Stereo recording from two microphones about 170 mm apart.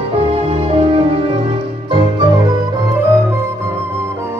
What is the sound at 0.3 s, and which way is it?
Music, 35° right (ahead or behind).